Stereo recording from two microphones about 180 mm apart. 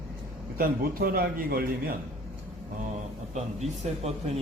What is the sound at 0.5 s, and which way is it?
A man's voice, 55° right (ahead or behind).